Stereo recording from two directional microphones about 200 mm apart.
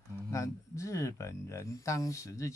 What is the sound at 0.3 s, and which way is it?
Speech, 15° left (ahead or behind).